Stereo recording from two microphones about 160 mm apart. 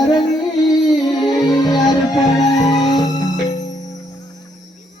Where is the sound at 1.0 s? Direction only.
25° left (ahead or behind).